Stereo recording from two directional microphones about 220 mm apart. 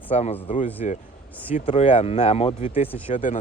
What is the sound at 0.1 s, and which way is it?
Speech, 30° left (ahead or behind).